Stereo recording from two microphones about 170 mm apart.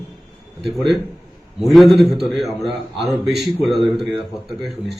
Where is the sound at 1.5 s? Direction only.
Centre (ahead or behind).